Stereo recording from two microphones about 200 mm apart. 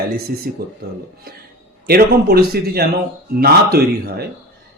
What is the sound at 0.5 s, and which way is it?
Speech, 50° right (ahead or behind).